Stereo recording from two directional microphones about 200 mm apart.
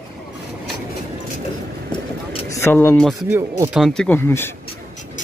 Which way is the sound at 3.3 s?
15° right (ahead or behind).